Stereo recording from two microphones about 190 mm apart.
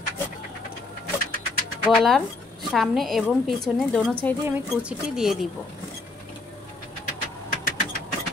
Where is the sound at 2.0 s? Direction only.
Centre (ahead or behind).